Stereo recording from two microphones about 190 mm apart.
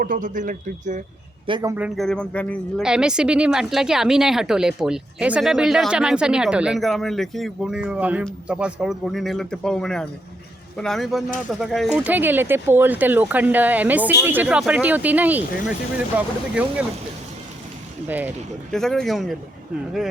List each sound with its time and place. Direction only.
0.0 s speech: 45° right (ahead or behind)
1.5 s a man's voice: 25° right (ahead or behind)
1.7 s speech: 5° right (ahead or behind)
2.0 s speech: 5° left (ahead or behind)
2.8 s speech: 5° right (ahead or behind)
18.7 s speech: centre (ahead or behind)